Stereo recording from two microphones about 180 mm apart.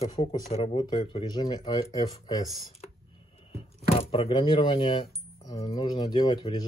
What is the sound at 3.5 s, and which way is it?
Speech, 30° left (ahead or behind).